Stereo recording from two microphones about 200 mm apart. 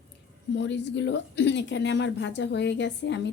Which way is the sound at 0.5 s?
65° left (ahead or behind).